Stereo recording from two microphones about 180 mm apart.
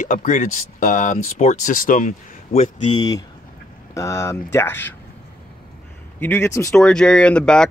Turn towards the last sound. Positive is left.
turn(degrees=5)  # may be behind; listen again after turning